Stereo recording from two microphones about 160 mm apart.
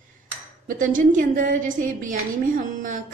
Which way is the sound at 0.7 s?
55° right (ahead or behind).